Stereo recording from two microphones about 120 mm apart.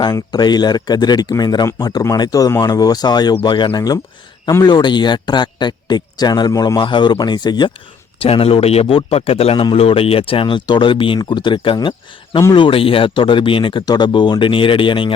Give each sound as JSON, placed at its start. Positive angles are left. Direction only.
{"t": 0.0, "sound": "speech", "side_deg": 35}
{"t": 8.2, "sound": "speech", "side_deg": 50}